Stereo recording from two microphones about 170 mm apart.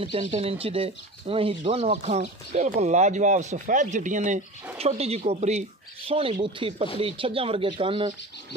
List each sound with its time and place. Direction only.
0.0 s speech: 35° right (ahead or behind)